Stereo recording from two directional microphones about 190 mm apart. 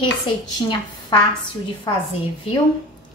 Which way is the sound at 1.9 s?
20° left (ahead or behind).